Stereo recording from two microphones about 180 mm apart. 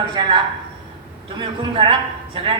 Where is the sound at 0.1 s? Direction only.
25° right (ahead or behind).